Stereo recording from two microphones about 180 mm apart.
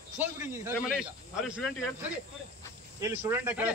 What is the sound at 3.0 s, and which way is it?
Speech, 10° right (ahead or behind).